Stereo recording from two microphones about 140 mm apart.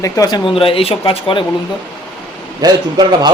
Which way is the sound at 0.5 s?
40° left (ahead or behind).